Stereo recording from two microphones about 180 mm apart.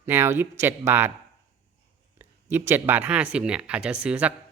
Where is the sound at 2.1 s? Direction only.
15° right (ahead or behind).